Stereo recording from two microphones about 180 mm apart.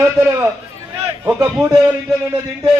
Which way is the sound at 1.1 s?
15° right (ahead or behind).